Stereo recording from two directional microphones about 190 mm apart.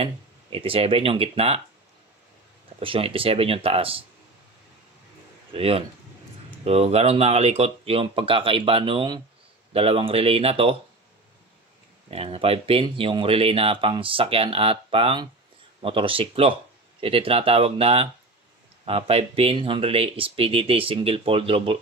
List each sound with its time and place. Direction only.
0.0 s speech: 30° right (ahead or behind)
2.8 s speech: 30° right (ahead or behind)
5.5 s speech: 30° right (ahead or behind)
12.1 s speech: 30° right (ahead or behind)